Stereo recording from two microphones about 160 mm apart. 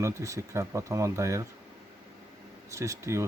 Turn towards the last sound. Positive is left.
turn(degrees=-20)  # may be behind; listen again after turning